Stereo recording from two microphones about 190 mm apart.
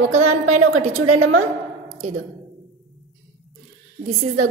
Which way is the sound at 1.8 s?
35° right (ahead or behind).